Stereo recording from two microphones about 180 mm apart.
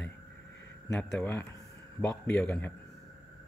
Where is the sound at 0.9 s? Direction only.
5° left (ahead or behind).